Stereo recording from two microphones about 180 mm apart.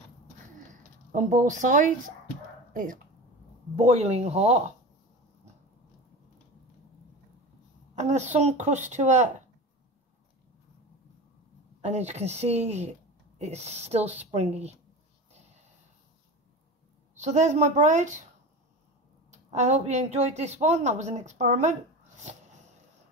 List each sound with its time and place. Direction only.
0.7 s a sound: 45° right (ahead or behind)
2.7 s speech: 50° right (ahead or behind)
3.7 s speech: 40° right (ahead or behind)
7.9 s speech: 40° right (ahead or behind)
11.8 s speech: 40° right (ahead or behind)
17.2 s speech: 40° right (ahead or behind)
19.5 s speech: 40° right (ahead or behind)